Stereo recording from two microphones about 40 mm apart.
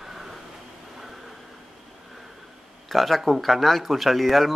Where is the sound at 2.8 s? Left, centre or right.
Centre.